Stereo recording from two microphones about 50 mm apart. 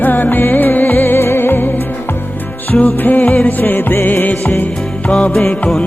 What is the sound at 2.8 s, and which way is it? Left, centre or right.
Music, left.